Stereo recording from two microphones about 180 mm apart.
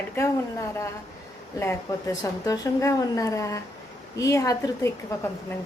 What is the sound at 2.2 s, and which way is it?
A woman's voice, 20° left (ahead or behind).